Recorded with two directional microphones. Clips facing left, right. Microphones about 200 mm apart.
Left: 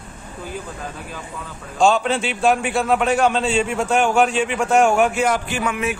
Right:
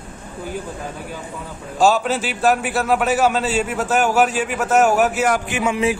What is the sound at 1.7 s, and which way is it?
A man's voice, 5° right (ahead or behind).